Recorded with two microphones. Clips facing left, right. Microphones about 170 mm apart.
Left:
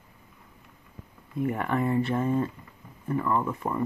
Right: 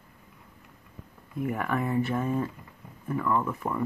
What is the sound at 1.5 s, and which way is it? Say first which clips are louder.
Speech: even; 25° left (ahead or behind).